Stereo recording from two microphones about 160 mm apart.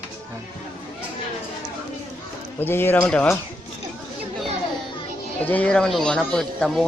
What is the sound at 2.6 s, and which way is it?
Speech, 15° left (ahead or behind).